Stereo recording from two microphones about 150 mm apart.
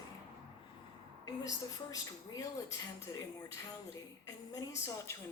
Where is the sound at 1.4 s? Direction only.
25° left (ahead or behind).